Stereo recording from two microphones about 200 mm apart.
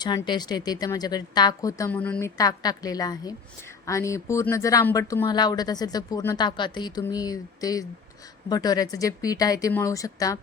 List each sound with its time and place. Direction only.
0.0 s speech: 20° left (ahead or behind)
2.4 s speech: 20° left (ahead or behind)